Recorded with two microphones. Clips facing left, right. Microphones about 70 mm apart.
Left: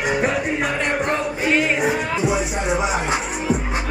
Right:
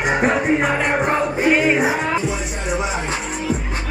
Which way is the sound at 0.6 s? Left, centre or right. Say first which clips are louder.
Right 3 dB; centre.